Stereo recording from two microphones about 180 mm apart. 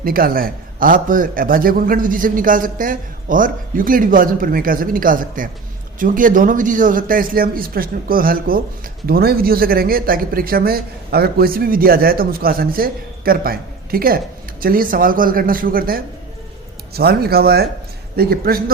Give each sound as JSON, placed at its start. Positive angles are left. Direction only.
{"t": 0.0, "sound": "a man's voice", "side_deg": -55}